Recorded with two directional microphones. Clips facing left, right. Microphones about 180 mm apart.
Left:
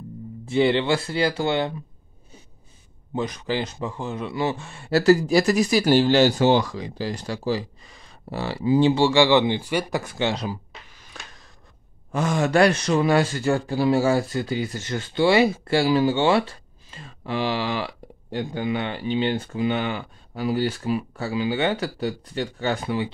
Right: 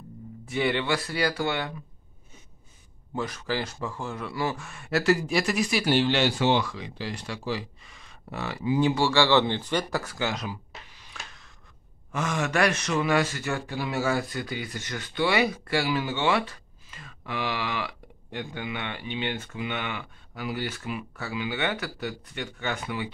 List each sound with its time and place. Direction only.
0.5 s speech: 25° left (ahead or behind)
3.2 s speech: 20° left (ahead or behind)
11.1 s a sound: 35° left (ahead or behind)
12.1 s speech: 35° left (ahead or behind)